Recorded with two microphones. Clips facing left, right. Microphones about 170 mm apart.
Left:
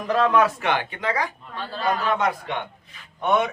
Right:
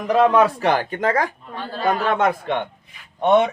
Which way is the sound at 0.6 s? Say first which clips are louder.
Right 5 dB; 40° right (ahead or behind).